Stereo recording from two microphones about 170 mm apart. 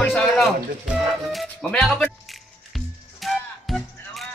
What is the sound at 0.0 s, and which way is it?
Music, 5° left (ahead or behind).